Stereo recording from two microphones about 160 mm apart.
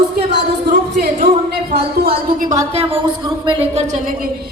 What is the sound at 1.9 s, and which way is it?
Speech, 75° right (ahead or behind).